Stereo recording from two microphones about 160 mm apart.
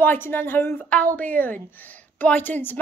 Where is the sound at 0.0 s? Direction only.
10° left (ahead or behind).